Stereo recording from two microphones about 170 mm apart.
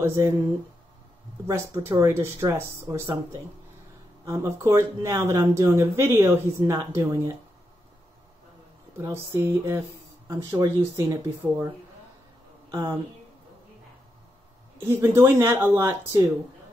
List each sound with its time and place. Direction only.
0.0 s speech: 15° right (ahead or behind)
1.5 s speech: 15° right (ahead or behind)
8.9 s speech: 15° right (ahead or behind)
14.8 s speech: 15° right (ahead or behind)